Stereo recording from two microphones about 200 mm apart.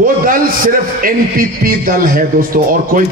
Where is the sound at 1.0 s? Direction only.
45° right (ahead or behind).